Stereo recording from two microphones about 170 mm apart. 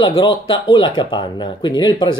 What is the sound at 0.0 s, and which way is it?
Speech, 25° left (ahead or behind).